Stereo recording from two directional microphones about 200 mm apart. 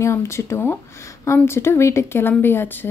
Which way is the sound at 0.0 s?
15° left (ahead or behind).